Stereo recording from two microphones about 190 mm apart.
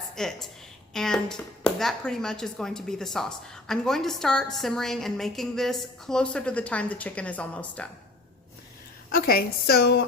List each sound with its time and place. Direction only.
0.2 s speech: centre (ahead or behind)
9.1 s a woman's voice: 50° left (ahead or behind)